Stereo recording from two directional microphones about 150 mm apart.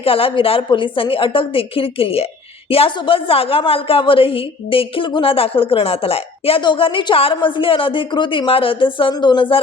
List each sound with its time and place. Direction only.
0.0 s a woman's voice: 40° left (ahead or behind)